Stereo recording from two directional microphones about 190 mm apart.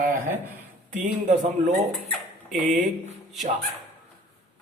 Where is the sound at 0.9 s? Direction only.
40° right (ahead or behind).